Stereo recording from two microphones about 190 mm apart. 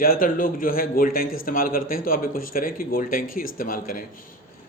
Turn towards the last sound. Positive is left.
turn(degrees=45)  # may be behind; listen again after turning